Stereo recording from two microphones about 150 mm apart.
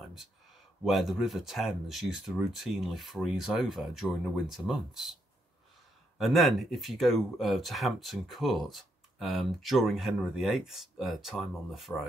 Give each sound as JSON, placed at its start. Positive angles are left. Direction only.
{"t": 0.8, "sound": "speech", "side_deg": 0}